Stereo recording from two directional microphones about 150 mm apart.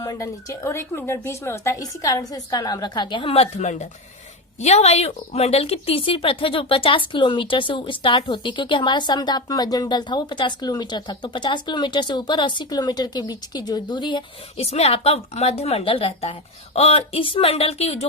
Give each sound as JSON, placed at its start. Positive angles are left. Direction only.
{"t": 0.0, "sound": "a woman's voice", "side_deg": 20}